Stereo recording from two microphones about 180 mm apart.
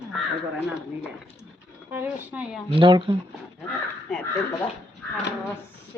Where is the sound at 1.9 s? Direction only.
10° right (ahead or behind).